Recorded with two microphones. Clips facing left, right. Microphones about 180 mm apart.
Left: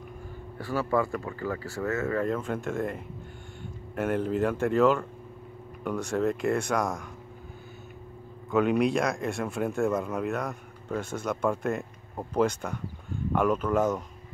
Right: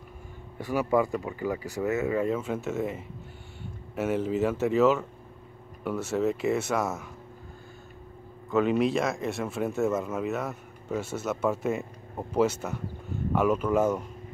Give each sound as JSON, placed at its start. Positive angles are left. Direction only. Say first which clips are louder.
{"t": 0.6, "sound": "speech", "louder": "right 2 dB", "side_deg": -15}
{"t": 8.5, "sound": "speech", "louder": "even", "side_deg": 0}